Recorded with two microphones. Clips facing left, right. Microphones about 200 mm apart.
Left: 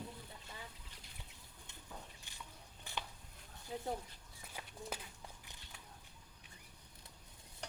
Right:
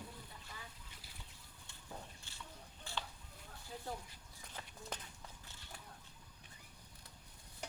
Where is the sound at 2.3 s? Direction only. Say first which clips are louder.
Even; 15° left (ahead or behind).